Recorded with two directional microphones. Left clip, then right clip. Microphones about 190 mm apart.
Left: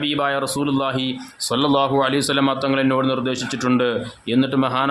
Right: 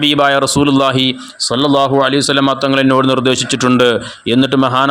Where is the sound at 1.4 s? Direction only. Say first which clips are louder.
Right 6 dB; 25° right (ahead or behind).